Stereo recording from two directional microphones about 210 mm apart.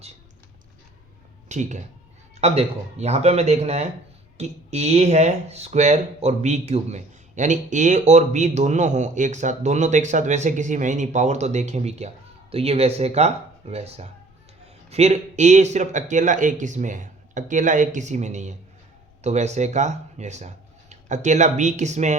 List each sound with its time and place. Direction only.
1.5 s speech: 35° right (ahead or behind)